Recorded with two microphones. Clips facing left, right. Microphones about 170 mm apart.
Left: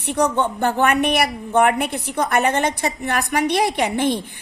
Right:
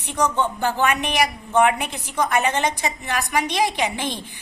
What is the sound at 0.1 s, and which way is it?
Speech, 60° left (ahead or behind).